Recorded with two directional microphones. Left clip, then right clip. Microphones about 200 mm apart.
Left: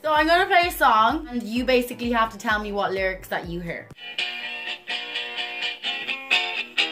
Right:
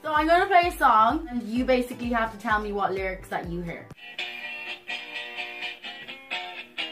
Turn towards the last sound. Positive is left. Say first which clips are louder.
# left 10 dB
turn(degrees=60)  # may be behind; listen again after turning